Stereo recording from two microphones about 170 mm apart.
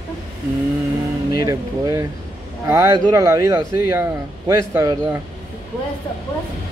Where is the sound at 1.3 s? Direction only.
20° right (ahead or behind).